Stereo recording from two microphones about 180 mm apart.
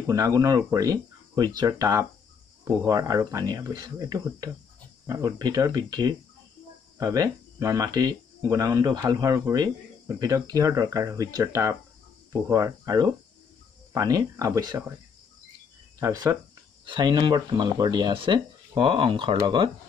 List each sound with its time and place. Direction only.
0.0 s speech: 20° right (ahead or behind)
16.0 s speech: 20° right (ahead or behind)